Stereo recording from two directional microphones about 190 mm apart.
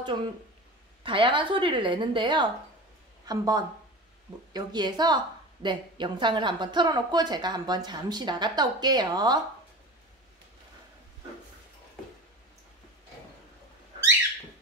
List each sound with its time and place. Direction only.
1.0 s a woman's voice: 25° right (ahead or behind)